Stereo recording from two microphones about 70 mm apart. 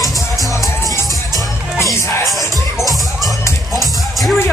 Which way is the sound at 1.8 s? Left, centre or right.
Left.